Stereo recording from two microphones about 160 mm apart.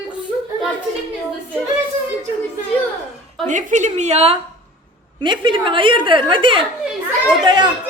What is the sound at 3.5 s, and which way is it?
Speech, 50° right (ahead or behind).